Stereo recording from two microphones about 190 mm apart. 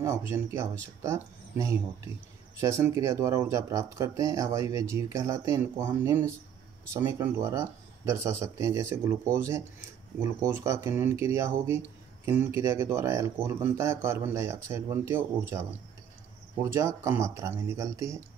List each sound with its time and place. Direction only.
0.0 s speech: 15° right (ahead or behind)
16.6 s speech: 15° right (ahead or behind)